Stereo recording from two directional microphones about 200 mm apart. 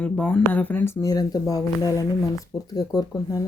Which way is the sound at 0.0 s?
5° left (ahead or behind).